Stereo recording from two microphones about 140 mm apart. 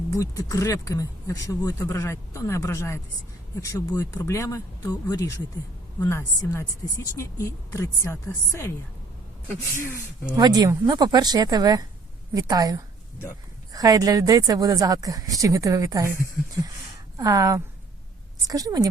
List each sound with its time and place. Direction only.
0.1 s speech: 25° left (ahead or behind)
10.3 s speech: 30° right (ahead or behind)
17.2 s speech: 25° right (ahead or behind)